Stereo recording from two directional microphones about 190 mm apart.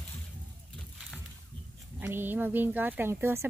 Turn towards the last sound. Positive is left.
turn(degrees=-10)  # may be behind; listen again after turning